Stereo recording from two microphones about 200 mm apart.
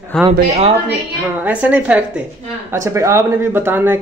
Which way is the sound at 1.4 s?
5° right (ahead or behind).